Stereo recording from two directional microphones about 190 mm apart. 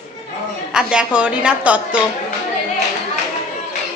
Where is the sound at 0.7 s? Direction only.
5° right (ahead or behind).